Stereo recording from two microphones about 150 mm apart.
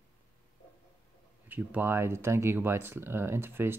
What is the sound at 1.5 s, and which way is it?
Speech, 10° right (ahead or behind).